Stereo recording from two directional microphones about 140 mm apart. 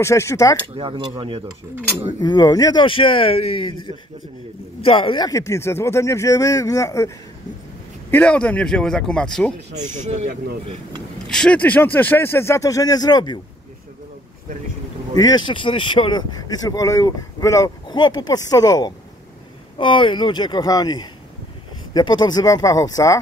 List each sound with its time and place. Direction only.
0.0 s speech: 20° left (ahead or behind)
0.7 s speech: 35° right (ahead or behind)
2.1 s speech: 30° left (ahead or behind)
5.3 s speech: 20° left (ahead or behind)
8.1 s speech: 10° left (ahead or behind)
9.8 s speech: 60° right (ahead or behind)
11.2 s speech: 5° left (ahead or behind); by 13.4 s 30° left (ahead or behind)
15.1 s speech: 30° left (ahead or behind)